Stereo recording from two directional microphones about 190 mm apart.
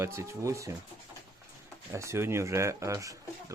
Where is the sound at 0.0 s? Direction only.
15° right (ahead or behind).